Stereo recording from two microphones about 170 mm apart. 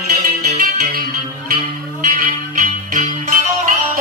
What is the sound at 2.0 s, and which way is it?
Music, 45° right (ahead or behind).